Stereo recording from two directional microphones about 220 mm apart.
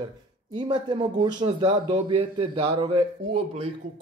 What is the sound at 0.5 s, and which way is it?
Speech, 20° right (ahead or behind).